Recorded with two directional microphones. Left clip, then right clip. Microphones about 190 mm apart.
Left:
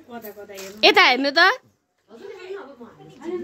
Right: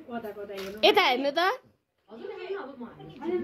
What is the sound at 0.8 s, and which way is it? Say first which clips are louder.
Speech: left 7 dB; 50° left (ahead or behind).